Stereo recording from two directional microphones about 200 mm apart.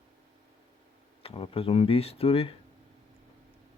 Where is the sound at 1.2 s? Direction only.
30° left (ahead or behind).